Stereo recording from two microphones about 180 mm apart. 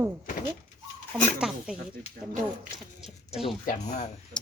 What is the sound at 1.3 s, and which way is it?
Speech, 5° right (ahead or behind).